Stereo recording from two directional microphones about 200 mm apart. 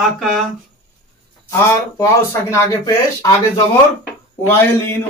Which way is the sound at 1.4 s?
15° left (ahead or behind).